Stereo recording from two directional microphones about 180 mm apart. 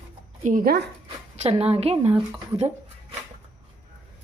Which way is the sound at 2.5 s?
35° right (ahead or behind).